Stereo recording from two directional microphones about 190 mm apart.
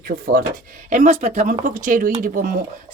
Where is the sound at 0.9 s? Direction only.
35° right (ahead or behind).